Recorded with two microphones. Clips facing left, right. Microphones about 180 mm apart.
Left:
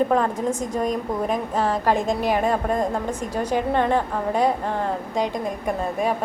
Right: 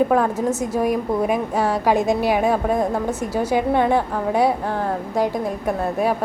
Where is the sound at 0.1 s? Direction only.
5° right (ahead or behind).